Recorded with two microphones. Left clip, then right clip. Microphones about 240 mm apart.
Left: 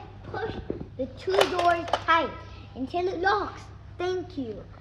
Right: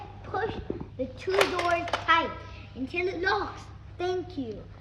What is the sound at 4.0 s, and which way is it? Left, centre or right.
Speech, centre.